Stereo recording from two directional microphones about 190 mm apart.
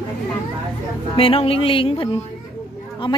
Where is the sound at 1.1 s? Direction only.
30° left (ahead or behind).